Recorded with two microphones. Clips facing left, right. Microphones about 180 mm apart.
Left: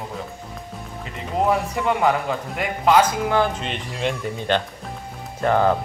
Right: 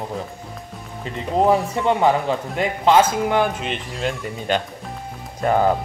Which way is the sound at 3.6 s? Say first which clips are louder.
Even; centre (ahead or behind).